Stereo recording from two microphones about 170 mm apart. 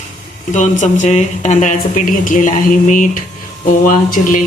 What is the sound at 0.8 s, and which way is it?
Speech, 45° left (ahead or behind).